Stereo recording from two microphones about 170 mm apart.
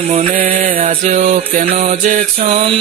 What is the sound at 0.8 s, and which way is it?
Music, 45° right (ahead or behind).